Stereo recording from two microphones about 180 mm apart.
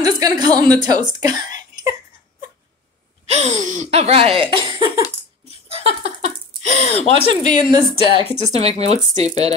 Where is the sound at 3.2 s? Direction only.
35° right (ahead or behind).